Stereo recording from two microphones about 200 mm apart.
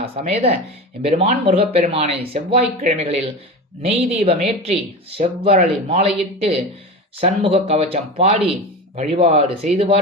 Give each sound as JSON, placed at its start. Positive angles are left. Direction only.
{"t": 0.0, "sound": "speech", "side_deg": -30}